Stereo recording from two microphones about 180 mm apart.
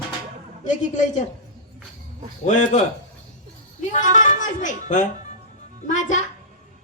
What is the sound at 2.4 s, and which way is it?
Speech, 40° left (ahead or behind).